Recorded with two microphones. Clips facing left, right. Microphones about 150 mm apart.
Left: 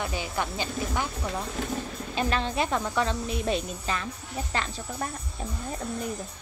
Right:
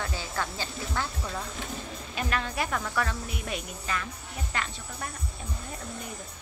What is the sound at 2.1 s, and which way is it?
Speech, 30° left (ahead or behind).